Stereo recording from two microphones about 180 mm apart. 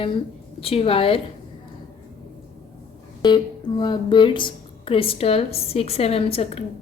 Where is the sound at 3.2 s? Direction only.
25° left (ahead or behind).